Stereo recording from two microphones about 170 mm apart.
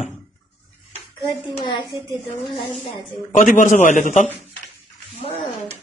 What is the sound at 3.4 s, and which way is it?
Speech, 50° left (ahead or behind).